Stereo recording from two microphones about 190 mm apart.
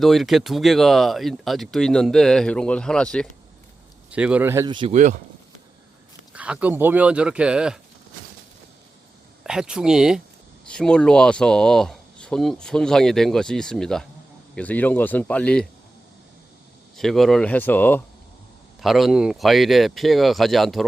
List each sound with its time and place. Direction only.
0.0 s speech: centre (ahead or behind)
4.1 s speech: 5° right (ahead or behind)
4.9 s speech: 40° right (ahead or behind)
6.3 s speech: 5° right (ahead or behind)
9.4 s a man's voice: 5° right (ahead or behind)
17.0 s a man's voice: centre (ahead or behind)
18.8 s speech: centre (ahead or behind)